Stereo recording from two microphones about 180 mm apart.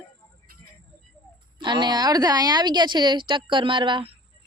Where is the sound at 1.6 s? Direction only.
25° right (ahead or behind).